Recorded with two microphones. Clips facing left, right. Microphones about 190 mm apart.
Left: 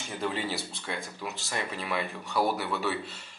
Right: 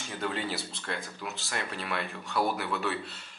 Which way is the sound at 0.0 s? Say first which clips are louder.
Left 1 dB; 5° left (ahead or behind).